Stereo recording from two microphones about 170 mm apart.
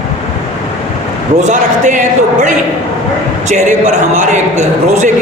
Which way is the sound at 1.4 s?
45° right (ahead or behind).